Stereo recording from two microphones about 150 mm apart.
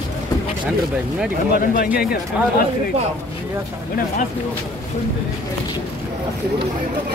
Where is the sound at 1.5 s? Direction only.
75° left (ahead or behind).